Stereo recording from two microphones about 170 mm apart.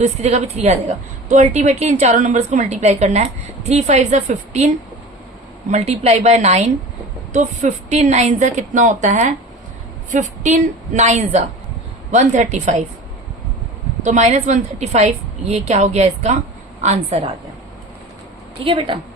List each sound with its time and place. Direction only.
0.0 s a woman's voice: 40° right (ahead or behind)
5.7 s a woman's voice: 40° right (ahead or behind)
14.0 s a woman's voice: 45° right (ahead or behind)
18.6 s a woman's voice: 30° right (ahead or behind)